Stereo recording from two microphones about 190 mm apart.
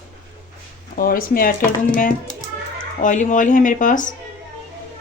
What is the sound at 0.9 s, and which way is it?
Speech, 50° left (ahead or behind).